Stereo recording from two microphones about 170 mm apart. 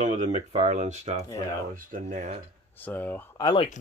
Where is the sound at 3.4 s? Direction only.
25° left (ahead or behind).